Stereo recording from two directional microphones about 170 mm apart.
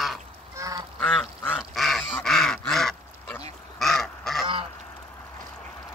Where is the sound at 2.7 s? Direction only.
Centre (ahead or behind).